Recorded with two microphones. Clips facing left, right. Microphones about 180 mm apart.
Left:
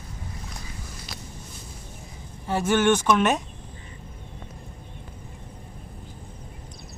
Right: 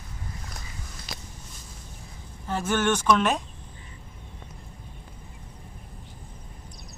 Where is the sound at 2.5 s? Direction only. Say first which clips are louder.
Left 4 dB; 10° left (ahead or behind).